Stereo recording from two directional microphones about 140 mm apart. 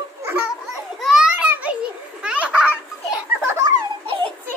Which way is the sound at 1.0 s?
5° right (ahead or behind).